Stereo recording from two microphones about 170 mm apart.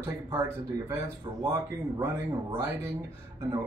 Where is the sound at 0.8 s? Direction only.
15° right (ahead or behind).